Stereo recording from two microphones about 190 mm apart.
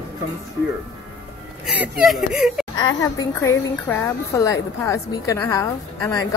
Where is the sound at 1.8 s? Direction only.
5° right (ahead or behind).